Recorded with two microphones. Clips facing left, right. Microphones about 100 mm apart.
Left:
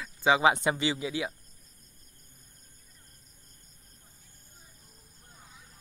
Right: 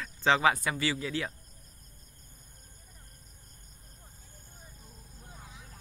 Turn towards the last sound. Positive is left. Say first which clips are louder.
# right 4 dB
turn(degrees=-90)